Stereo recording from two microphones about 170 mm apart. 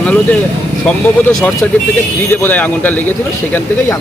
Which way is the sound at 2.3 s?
10° left (ahead or behind).